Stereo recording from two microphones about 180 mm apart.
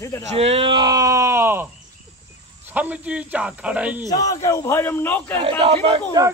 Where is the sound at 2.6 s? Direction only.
10° right (ahead or behind).